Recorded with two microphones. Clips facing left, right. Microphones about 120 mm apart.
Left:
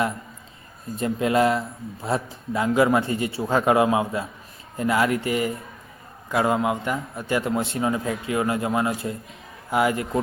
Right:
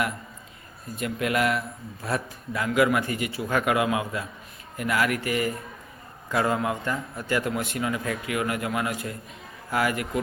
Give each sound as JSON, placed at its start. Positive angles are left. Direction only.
{"t": 0.9, "sound": "a man's voice", "side_deg": 25}